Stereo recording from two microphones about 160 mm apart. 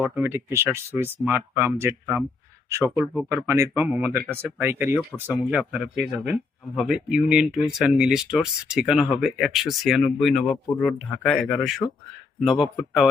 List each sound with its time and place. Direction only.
0.0 s speech: 15° right (ahead or behind)